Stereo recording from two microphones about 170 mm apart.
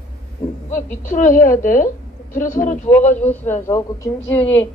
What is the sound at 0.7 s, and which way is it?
A woman's voice, 50° left (ahead or behind).